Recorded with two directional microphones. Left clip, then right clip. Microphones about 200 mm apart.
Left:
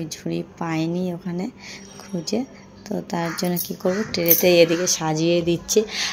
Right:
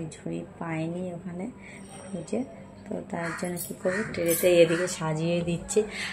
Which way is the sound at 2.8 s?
50° left (ahead or behind).